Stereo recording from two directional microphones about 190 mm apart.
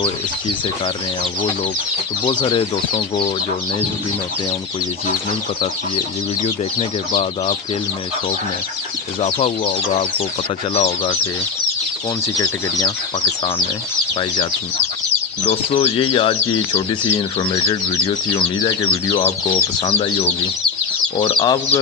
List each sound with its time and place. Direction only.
2.2 s speech: 25° left (ahead or behind)
6.4 s speech: 30° left (ahead or behind)
9.2 s speech: 30° left (ahead or behind)
15.4 s speech: 30° left (ahead or behind)